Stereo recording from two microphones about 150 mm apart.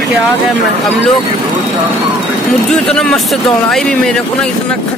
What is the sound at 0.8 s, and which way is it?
Speech, centre (ahead or behind).